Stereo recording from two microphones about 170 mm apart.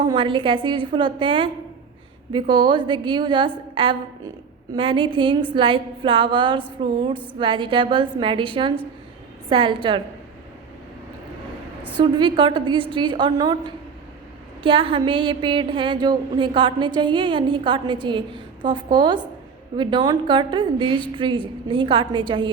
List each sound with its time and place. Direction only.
0.0 s a woman's voice: 30° right (ahead or behind)
11.9 s a woman's voice: 25° right (ahead or behind)